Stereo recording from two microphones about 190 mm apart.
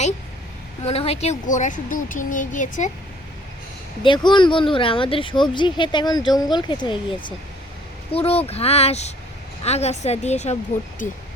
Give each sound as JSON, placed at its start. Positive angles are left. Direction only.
{"t": 0.9, "sound": "speech", "side_deg": 35}
{"t": 4.0, "sound": "speech", "side_deg": 25}